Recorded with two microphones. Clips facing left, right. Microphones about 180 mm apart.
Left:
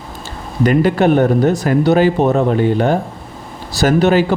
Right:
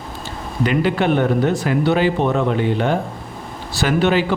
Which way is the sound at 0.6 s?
45° left (ahead or behind).